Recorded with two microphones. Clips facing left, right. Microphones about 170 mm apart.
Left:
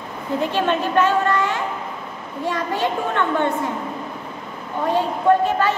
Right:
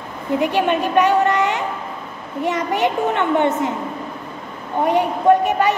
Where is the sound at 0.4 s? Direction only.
15° right (ahead or behind).